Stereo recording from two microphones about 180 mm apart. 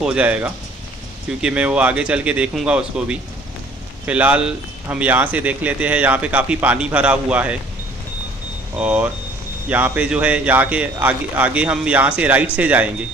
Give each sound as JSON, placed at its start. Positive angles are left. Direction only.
{"t": 0.0, "sound": "speech", "side_deg": -5}
{"t": 8.7, "sound": "speech", "side_deg": -5}